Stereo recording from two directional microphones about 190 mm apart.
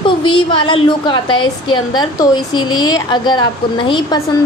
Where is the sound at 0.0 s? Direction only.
25° left (ahead or behind).